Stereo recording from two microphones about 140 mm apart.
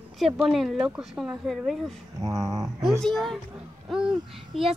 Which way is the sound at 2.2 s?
25° right (ahead or behind).